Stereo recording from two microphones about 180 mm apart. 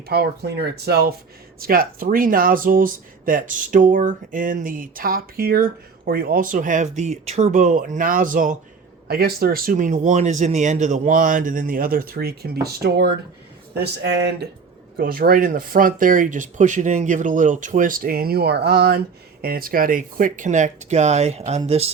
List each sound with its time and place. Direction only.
0.1 s speech: 65° right (ahead or behind)
14.9 s speech: 55° right (ahead or behind); by 21.8 s 35° right (ahead or behind)